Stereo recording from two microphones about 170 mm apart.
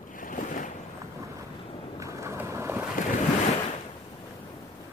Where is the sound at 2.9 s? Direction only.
50° left (ahead or behind).